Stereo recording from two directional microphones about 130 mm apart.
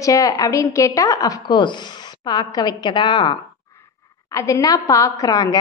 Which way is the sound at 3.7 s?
25° left (ahead or behind).